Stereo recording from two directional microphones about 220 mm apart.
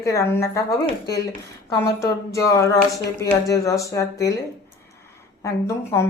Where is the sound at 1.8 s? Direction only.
15° left (ahead or behind).